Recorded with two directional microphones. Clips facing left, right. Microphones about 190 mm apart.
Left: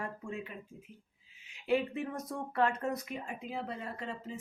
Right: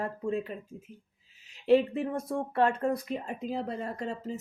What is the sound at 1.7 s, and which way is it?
Speech, 30° right (ahead or behind).